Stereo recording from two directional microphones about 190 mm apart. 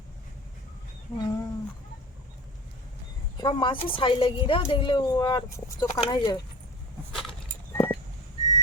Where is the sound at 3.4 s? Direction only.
25° left (ahead or behind).